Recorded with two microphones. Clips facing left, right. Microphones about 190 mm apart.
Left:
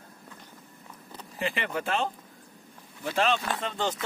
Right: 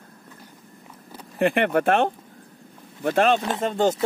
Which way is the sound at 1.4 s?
60° right (ahead or behind).